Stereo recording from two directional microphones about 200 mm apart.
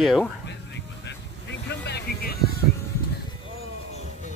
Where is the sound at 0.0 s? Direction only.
Centre (ahead or behind).